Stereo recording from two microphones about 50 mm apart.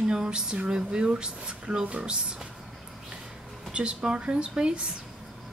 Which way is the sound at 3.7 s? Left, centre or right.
Centre.